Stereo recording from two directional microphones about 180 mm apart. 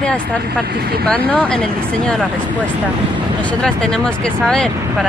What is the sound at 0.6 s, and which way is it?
Speech, 60° right (ahead or behind).